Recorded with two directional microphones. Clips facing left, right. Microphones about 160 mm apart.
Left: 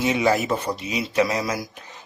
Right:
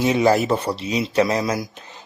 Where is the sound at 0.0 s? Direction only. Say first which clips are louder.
Right 4 dB; 35° right (ahead or behind).